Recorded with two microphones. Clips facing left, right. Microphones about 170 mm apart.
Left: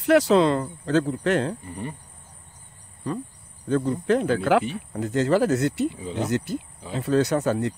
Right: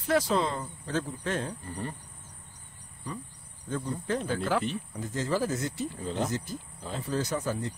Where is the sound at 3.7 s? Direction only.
65° left (ahead or behind).